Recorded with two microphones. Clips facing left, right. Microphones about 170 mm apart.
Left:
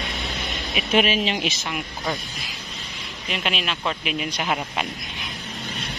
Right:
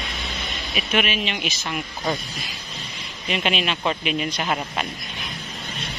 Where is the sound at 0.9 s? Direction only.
35° left (ahead or behind).